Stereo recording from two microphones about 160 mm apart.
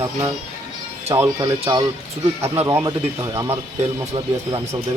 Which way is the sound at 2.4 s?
15° right (ahead or behind).